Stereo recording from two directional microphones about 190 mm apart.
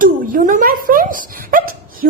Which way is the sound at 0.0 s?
45° right (ahead or behind).